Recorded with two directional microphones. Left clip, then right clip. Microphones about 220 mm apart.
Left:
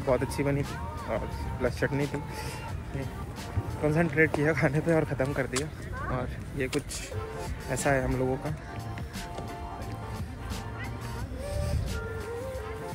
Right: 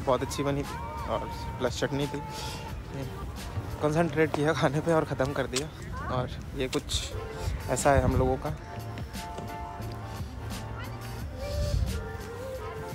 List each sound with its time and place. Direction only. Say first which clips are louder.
0.1 s speech: even; 10° right (ahead or behind)
3.8 s speech: left 1 dB; 10° right (ahead or behind)
5.5 s speech: even; centre (ahead or behind)
7.7 s speech: right 3 dB; 20° right (ahead or behind)
11.4 s music: right 2 dB; 5° right (ahead or behind)